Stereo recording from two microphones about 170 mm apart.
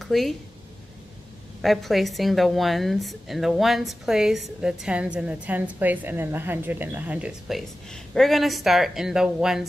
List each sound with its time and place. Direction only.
0.0 s speech: centre (ahead or behind)
1.6 s a woman's voice: centre (ahead or behind)